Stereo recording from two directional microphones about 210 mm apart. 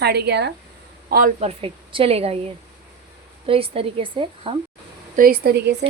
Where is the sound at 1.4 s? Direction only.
25° right (ahead or behind).